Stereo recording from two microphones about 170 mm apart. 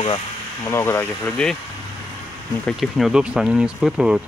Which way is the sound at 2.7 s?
Centre (ahead or behind).